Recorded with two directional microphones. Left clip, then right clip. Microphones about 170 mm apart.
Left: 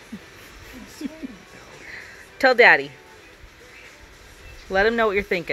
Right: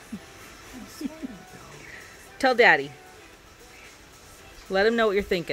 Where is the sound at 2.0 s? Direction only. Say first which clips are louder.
Left 5 dB; 20° right (ahead or behind).